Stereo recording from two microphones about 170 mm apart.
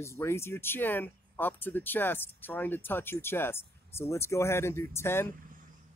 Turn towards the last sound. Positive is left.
turn(degrees=15)  # may be behind; listen again after turning